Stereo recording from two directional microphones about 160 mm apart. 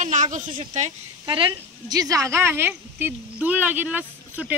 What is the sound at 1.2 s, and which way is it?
A woman's voice, 30° right (ahead or behind).